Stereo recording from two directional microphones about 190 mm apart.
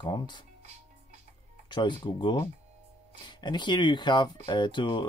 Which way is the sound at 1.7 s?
25° left (ahead or behind).